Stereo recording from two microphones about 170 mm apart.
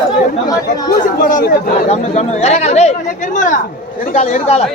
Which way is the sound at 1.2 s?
60° left (ahead or behind).